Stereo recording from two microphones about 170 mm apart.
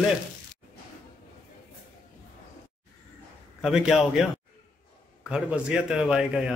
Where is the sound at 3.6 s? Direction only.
5° right (ahead or behind).